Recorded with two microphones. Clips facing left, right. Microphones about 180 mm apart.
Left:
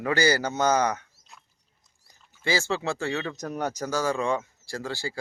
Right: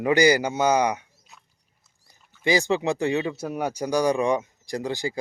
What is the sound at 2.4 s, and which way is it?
Speech, 15° right (ahead or behind).